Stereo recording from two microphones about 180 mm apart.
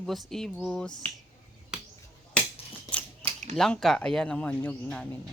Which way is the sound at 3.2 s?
30° right (ahead or behind).